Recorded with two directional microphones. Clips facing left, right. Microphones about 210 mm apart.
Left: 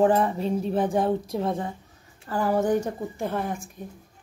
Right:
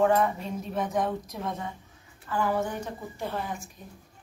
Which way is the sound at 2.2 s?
40° left (ahead or behind).